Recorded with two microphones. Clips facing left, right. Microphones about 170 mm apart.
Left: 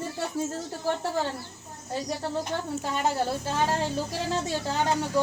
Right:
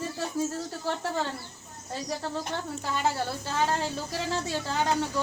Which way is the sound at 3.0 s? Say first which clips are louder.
Left 3 dB; 15° left (ahead or behind).